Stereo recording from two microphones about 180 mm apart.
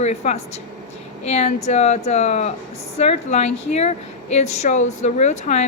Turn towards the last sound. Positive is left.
turn(degrees=40)  # may be behind; listen again after turning